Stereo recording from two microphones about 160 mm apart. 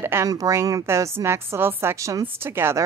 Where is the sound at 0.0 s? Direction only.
15° right (ahead or behind).